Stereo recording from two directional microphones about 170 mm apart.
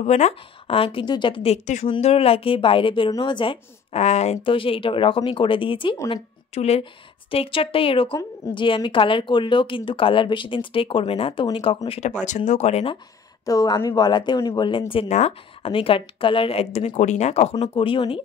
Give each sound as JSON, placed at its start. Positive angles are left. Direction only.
{"t": 0.0, "sound": "a woman's voice", "side_deg": 40}
{"t": 13.5, "sound": "a woman's voice", "side_deg": 20}